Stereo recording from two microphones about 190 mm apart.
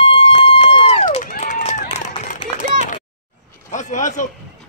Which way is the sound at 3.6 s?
40° left (ahead or behind).